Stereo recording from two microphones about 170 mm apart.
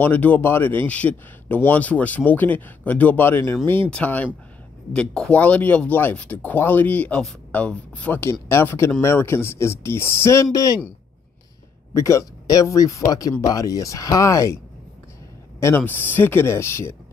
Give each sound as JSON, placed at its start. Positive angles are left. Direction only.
{"t": 0.0, "sound": "speech", "side_deg": 10}
{"t": 11.9, "sound": "speech", "side_deg": 20}
{"t": 15.6, "sound": "speech", "side_deg": 10}